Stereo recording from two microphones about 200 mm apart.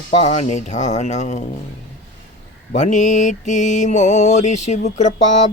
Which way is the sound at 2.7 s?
40° left (ahead or behind).